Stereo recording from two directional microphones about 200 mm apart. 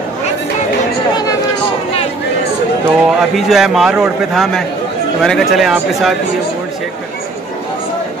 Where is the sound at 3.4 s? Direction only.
Centre (ahead or behind).